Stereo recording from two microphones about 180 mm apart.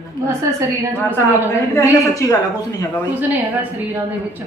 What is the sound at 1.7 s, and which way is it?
Speech, 15° left (ahead or behind).